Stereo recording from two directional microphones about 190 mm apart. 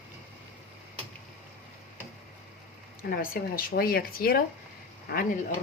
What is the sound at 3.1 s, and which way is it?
Speech, 50° left (ahead or behind).